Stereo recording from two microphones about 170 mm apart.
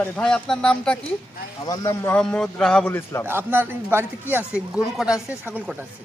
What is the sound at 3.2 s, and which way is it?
A man's voice, 15° right (ahead or behind).